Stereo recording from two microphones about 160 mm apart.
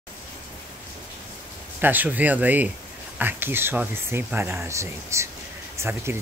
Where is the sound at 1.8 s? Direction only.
10° right (ahead or behind).